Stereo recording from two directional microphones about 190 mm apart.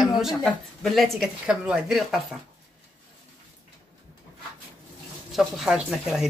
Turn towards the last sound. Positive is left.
turn(degrees=0)  # may be behind; listen again after turning